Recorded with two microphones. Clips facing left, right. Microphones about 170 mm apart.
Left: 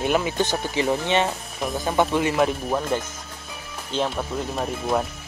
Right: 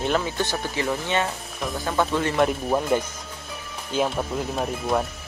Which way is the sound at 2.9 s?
15° right (ahead or behind).